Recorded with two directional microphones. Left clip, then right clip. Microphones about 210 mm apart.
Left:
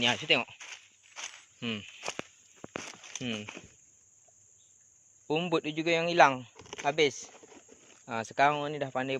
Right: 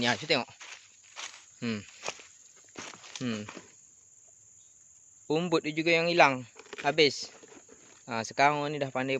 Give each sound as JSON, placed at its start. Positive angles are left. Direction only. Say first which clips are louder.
{"t": 0.3, "sound": "a man's voice", "louder": "left 2 dB", "side_deg": -10}
{"t": 0.6, "sound": "walk", "louder": "left 1 dB", "side_deg": 45}
{"t": 1.5, "sound": "a sound", "louder": "even", "side_deg": -15}
{"t": 2.8, "sound": "a sound", "louder": "even", "side_deg": 45}
{"t": 3.2, "sound": "speech", "louder": "right 1 dB", "side_deg": -15}
{"t": 5.3, "sound": "a man's voice", "louder": "right 1 dB", "side_deg": -15}